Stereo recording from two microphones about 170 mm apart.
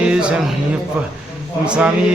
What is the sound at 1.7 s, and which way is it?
Mantra, 5° right (ahead or behind).